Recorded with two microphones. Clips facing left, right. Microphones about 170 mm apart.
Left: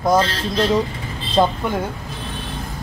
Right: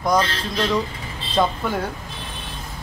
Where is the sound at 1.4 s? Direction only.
30° left (ahead or behind).